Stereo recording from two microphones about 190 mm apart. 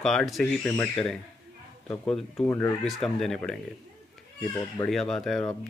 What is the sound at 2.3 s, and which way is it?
Speech, 15° left (ahead or behind).